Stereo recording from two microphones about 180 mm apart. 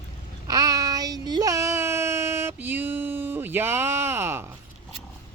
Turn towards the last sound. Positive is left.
turn(degrees=-15)  # may be behind; listen again after turning